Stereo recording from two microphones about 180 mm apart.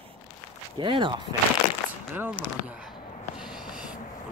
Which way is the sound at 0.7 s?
25° right (ahead or behind).